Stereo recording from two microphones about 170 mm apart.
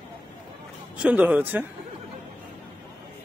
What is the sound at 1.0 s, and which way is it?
Speech, 10° right (ahead or behind).